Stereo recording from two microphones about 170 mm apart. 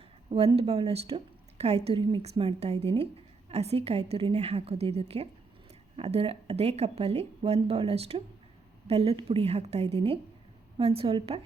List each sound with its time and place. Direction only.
0.3 s a woman's voice: 35° right (ahead or behind)